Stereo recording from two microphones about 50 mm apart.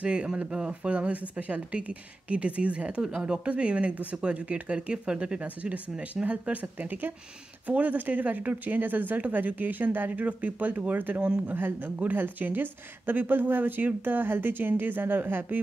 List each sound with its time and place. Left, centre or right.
0.0 s a woman's voice: right
11.1 s speech: right
11.5 s a woman's voice: right